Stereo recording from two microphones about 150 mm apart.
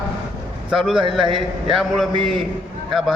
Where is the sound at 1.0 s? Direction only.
35° right (ahead or behind).